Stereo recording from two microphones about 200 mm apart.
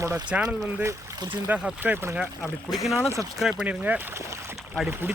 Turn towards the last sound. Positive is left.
turn(degrees=-5)  # may be behind; listen again after turning